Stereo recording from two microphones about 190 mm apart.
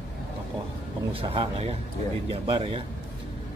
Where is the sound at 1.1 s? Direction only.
30° right (ahead or behind).